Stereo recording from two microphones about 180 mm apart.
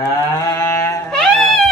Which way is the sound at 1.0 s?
Centre (ahead or behind).